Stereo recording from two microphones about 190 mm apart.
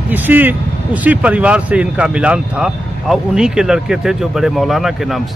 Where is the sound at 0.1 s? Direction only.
10° right (ahead or behind).